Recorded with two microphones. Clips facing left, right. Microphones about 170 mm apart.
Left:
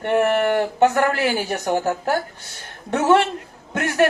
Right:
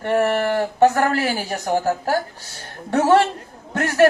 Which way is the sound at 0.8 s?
40° right (ahead or behind).